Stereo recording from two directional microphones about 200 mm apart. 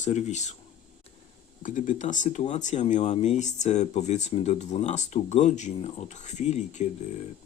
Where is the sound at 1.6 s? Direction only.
40° left (ahead or behind).